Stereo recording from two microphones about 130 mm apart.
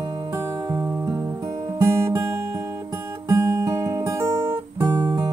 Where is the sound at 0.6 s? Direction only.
40° right (ahead or behind).